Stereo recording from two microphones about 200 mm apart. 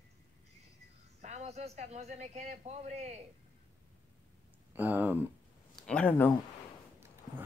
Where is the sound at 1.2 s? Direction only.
35° right (ahead or behind).